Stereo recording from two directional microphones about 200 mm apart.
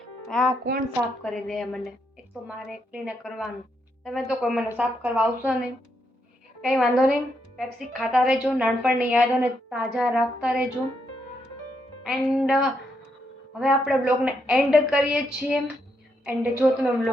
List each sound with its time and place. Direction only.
0.0 s music: 5° left (ahead or behind)
1.2 s a woman's voice: centre (ahead or behind)
6.6 s a woman's voice: centre (ahead or behind)
12.0 s a woman's voice: centre (ahead or behind)